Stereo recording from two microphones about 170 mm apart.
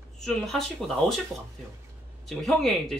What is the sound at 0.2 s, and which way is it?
Speech, centre (ahead or behind).